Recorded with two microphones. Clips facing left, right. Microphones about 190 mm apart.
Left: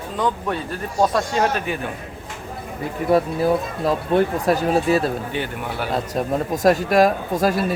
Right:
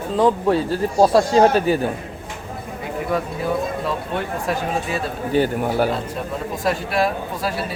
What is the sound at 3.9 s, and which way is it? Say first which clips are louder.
Speech: left 6 dB; 40° left (ahead or behind).